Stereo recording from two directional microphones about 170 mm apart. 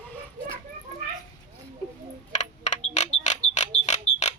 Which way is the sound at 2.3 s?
45° left (ahead or behind).